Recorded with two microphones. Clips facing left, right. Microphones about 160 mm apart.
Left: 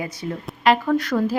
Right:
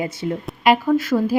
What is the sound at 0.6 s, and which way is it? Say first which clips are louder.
Speech: right 2 dB; 10° right (ahead or behind).